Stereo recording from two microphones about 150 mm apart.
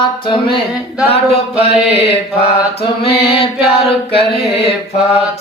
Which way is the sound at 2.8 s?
40° left (ahead or behind).